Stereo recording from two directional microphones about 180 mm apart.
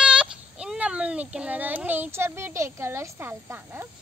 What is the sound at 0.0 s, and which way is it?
A child's voice, 5° right (ahead or behind).